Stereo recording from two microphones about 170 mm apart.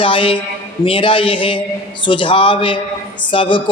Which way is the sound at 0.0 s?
30° left (ahead or behind).